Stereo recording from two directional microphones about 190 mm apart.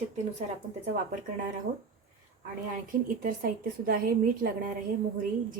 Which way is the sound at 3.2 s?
45° right (ahead or behind).